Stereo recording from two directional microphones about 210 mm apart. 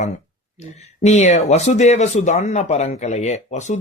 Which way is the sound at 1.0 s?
35° left (ahead or behind).